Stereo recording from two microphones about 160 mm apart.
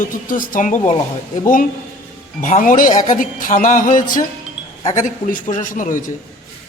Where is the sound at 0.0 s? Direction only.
55° left (ahead or behind).